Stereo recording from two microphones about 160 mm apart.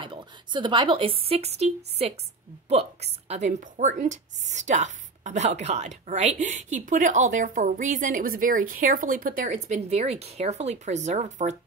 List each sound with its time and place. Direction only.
0.0 s a woman's voice: 30° right (ahead or behind); by 11.5 s 50° right (ahead or behind)